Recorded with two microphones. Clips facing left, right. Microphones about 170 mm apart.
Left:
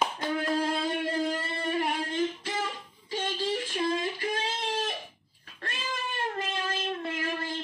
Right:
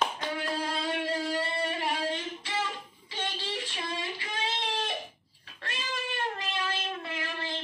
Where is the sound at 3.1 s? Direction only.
45° left (ahead or behind).